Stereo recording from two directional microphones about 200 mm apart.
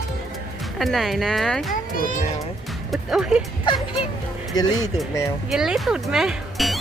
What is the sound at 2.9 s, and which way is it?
Speech, centre (ahead or behind).